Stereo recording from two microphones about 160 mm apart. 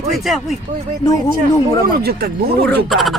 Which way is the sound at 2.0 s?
80° right.